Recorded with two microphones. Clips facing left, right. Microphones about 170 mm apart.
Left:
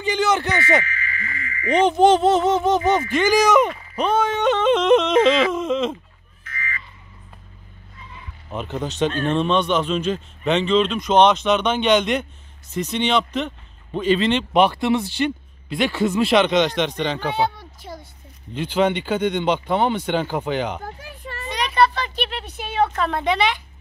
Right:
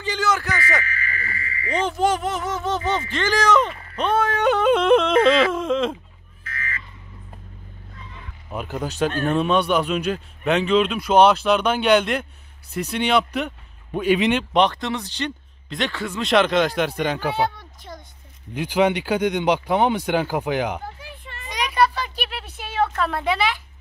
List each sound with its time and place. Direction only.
0.0 s speech: 20° left (ahead or behind)
0.8 s owl: 40° right (ahead or behind)
1.7 s speech: 20° left (ahead or behind)
4.0 s speech: centre (ahead or behind)
8.5 s speech: 5° right (ahead or behind)
14.5 s speech: 10° left (ahead or behind)
18.5 s speech: 10° right (ahead or behind)
20.8 s a sound: 45° left (ahead or behind)
21.5 s speech: 10° right (ahead or behind)